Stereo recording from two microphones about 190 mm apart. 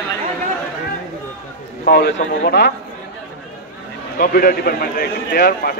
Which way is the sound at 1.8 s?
55° left (ahead or behind).